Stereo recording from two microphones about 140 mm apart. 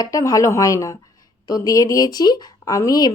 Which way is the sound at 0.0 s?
25° left (ahead or behind).